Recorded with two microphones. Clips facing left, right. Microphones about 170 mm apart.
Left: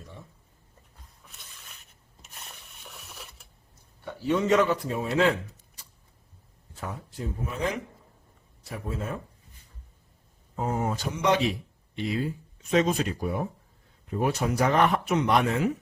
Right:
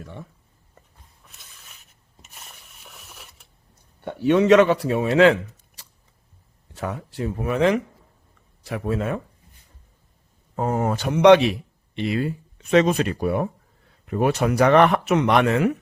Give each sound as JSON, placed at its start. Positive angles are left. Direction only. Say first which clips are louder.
{"t": 0.0, "sound": "a sound", "louder": "right 8 dB", "side_deg": -70}
{"t": 1.4, "sound": "rub", "louder": "even", "side_deg": 0}
{"t": 4.0, "sound": "speech", "louder": "right 8 dB", "side_deg": -70}
{"t": 10.5, "sound": "speech", "louder": "right 6 dB", "side_deg": -60}